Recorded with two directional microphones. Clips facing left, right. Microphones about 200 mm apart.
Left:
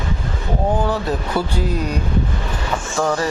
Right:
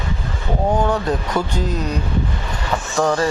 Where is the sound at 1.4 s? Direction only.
10° left (ahead or behind).